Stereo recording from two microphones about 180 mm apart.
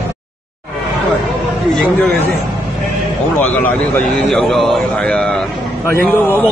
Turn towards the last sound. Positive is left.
turn(degrees=5)  # may be behind; listen again after turning